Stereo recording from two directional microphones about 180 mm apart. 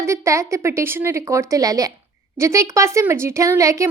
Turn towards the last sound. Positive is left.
turn(degrees=-15)  # may be behind; listen again after turning